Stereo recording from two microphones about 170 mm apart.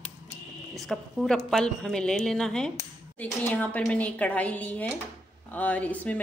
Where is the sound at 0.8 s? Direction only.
Centre (ahead or behind).